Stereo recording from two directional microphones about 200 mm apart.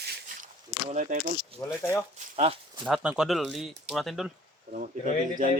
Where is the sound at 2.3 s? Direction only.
30° right (ahead or behind).